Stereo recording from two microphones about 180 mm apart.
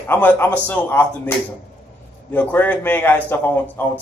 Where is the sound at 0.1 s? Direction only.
10° left (ahead or behind).